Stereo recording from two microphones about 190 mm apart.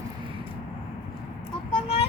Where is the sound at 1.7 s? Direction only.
30° left (ahead or behind).